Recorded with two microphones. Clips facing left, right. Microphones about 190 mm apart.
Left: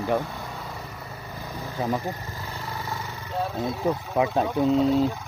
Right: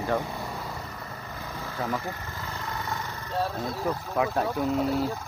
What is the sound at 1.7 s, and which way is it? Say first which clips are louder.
Speech: left 4 dB; 20° left (ahead or behind).